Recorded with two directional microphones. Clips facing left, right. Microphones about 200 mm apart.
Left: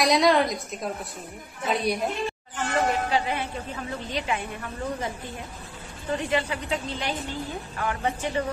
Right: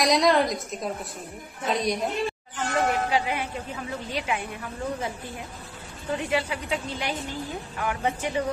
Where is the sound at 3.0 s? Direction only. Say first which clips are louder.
Even; 10° right (ahead or behind).